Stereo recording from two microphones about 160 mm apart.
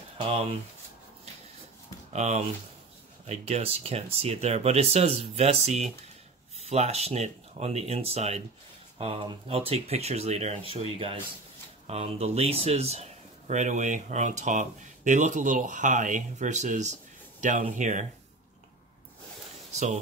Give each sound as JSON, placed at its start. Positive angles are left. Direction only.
{"t": 0.2, "sound": "speech", "side_deg": -35}
{"t": 2.1, "sound": "speech", "side_deg": -45}